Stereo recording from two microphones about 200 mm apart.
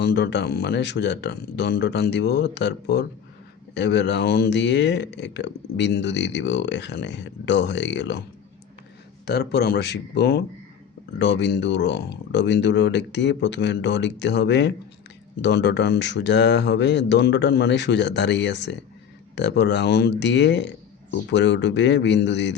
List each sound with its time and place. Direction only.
0.0 s speech: 55° left (ahead or behind)
9.2 s speech: 55° left (ahead or behind)